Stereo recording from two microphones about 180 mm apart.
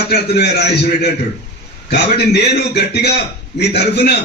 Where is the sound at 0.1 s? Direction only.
65° left (ahead or behind).